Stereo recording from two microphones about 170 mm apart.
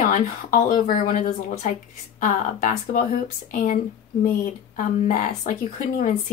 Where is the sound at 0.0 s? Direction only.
50° left (ahead or behind).